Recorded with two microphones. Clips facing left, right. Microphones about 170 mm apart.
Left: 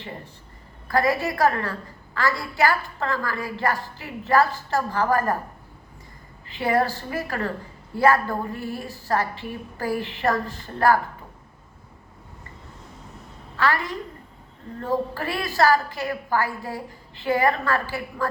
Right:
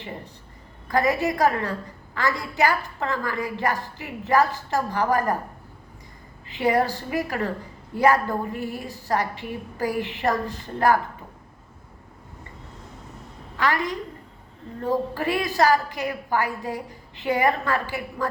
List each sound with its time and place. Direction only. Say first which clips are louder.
0.9 s a woman's voice: even; 20° right (ahead or behind)
6.5 s a woman's voice: right 1 dB; 15° right (ahead or behind)
13.6 s a woman's voice: even; 20° right (ahead or behind)